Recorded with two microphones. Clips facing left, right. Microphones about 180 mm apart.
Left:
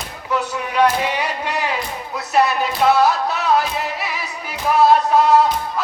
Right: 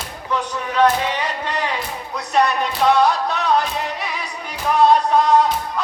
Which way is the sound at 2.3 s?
5° left (ahead or behind).